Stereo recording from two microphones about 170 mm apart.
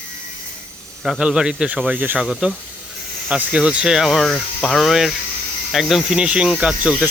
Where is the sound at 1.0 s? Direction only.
Centre (ahead or behind).